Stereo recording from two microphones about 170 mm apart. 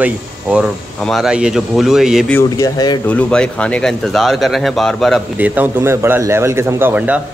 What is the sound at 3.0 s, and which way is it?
Speech, 5° left (ahead or behind).